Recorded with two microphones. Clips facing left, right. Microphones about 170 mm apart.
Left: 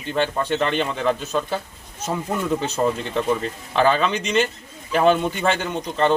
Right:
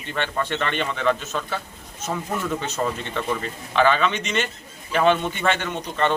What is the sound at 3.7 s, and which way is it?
A man's voice, 35° left (ahead or behind).